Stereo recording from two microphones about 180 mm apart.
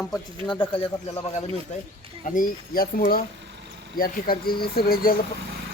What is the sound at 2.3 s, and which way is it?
Speech, 50° left (ahead or behind).